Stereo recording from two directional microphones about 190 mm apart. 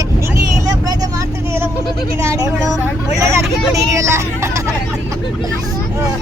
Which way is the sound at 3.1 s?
15° right (ahead or behind).